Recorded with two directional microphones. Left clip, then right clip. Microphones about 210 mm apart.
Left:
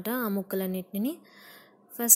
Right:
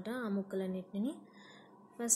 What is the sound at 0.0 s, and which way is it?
Speech, 40° left (ahead or behind).